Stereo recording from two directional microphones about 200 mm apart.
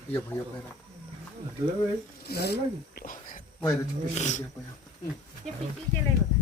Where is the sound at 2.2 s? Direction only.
55° left (ahead or behind); by 4.4 s 35° left (ahead or behind).